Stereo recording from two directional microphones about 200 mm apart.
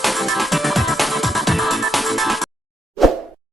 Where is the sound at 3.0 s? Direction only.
Centre (ahead or behind).